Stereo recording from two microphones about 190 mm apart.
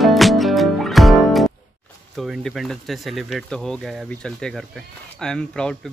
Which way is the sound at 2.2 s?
Centre (ahead or behind).